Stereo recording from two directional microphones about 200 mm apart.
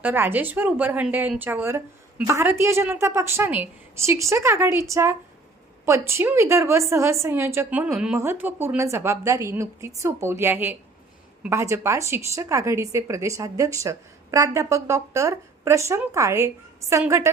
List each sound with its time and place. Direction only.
0.0 s a woman's voice: 10° right (ahead or behind)